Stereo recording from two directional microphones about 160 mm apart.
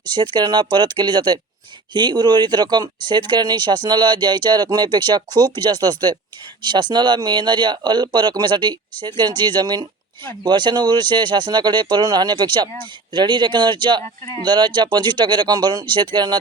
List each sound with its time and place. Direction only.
0.0 s speech: 30° right (ahead or behind)
14.0 s speech: 20° left (ahead or behind)
14.4 s speech: 30° right (ahead or behind)